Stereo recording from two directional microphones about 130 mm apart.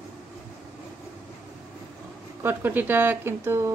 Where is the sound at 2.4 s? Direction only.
15° right (ahead or behind).